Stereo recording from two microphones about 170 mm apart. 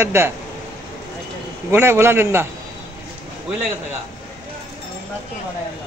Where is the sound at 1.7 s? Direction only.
15° right (ahead or behind).